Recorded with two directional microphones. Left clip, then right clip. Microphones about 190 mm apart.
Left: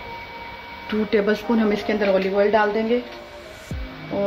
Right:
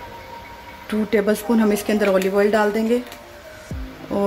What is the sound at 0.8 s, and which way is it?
Speech, 20° right (ahead or behind).